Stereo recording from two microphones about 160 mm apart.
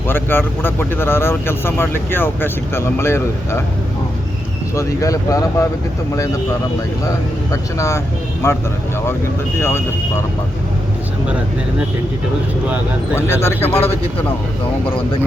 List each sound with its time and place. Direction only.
0.1 s speech: 15° left (ahead or behind)
4.7 s speech: 20° left (ahead or behind)
7.5 s speech: 20° left (ahead or behind)
9.6 s speech: 15° left (ahead or behind)
13.1 s speech: 15° left (ahead or behind)
14.8 s speech: 35° left (ahead or behind)